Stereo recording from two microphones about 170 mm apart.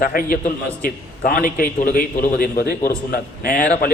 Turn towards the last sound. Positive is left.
turn(degrees=55)  # may be behind; listen again after turning